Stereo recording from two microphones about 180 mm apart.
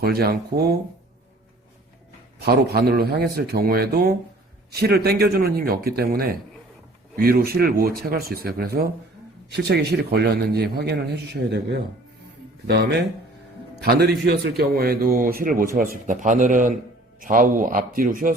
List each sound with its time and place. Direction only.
0.0 s speech: 60° right (ahead or behind)
2.4 s a man's voice: 60° right (ahead or behind)